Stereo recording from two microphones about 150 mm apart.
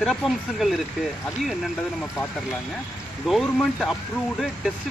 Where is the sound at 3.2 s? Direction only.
Centre (ahead or behind).